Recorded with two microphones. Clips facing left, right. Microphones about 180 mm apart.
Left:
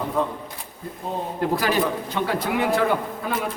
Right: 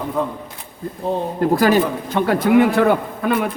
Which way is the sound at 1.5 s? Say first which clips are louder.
Right 7 dB; 45° right (ahead or behind).